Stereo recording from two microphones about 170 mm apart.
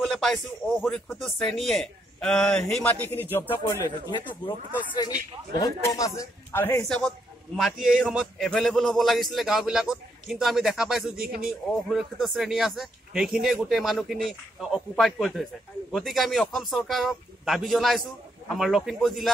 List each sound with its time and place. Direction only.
0.0 s speech: centre (ahead or behind); by 4.2 s 20° left (ahead or behind)
5.6 s speech: 20° left (ahead or behind)
6.9 s speech: centre (ahead or behind)
11.2 s a man's voice: 60° right (ahead or behind)
11.7 s speech: centre (ahead or behind)